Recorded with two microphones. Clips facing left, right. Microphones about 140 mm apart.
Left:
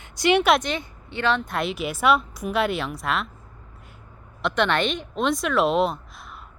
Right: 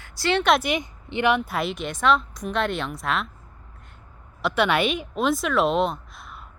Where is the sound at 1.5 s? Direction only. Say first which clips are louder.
Left 1 dB; centre (ahead or behind).